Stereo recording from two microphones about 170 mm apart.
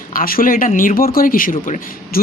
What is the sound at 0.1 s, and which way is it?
Speech, 55° left (ahead or behind).